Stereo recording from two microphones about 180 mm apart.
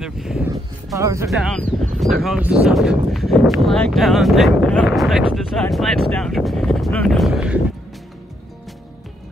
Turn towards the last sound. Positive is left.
turn(degrees=-5)  # may be behind; listen again after turning